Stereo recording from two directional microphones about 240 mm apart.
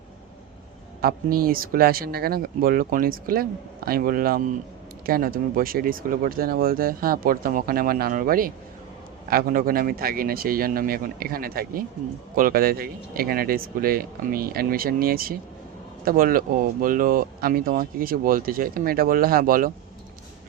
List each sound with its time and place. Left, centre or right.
1.0 s speech: right